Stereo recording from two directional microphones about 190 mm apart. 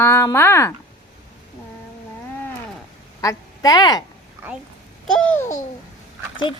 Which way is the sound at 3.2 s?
20° left (ahead or behind).